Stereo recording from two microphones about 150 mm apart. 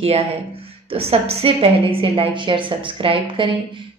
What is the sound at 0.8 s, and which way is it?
A woman's voice, 40° right (ahead or behind).